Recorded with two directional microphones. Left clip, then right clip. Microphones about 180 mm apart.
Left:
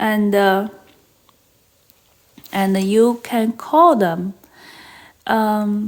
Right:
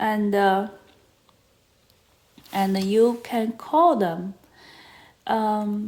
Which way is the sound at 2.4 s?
30° left (ahead or behind).